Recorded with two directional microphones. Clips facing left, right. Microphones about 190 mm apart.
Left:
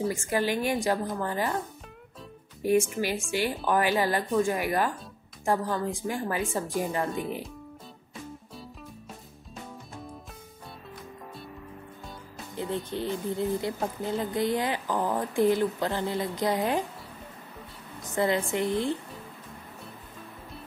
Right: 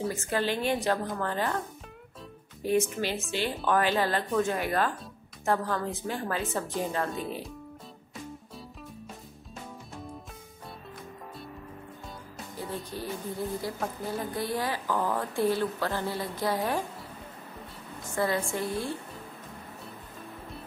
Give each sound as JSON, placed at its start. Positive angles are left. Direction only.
{"t": 0.1, "sound": "a woman's voice", "side_deg": 15}
{"t": 2.6, "sound": "a woman's voice", "side_deg": 15}
{"t": 12.5, "sound": "speech", "side_deg": 25}
{"t": 18.1, "sound": "a woman's voice", "side_deg": 20}